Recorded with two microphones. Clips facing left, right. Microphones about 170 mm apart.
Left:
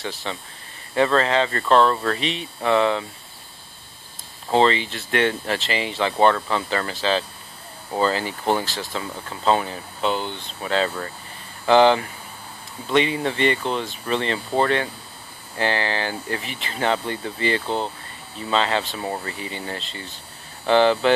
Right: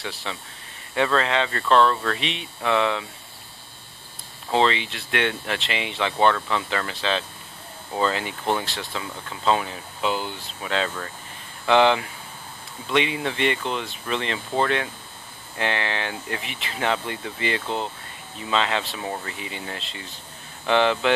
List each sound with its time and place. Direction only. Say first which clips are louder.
0.0 s speech: left 3 dB; centre (ahead or behind)
4.5 s speech: left 3 dB; centre (ahead or behind)
17.6 s speech: left 3 dB; 35° left (ahead or behind)
18.5 s speech: left 2 dB; centre (ahead or behind)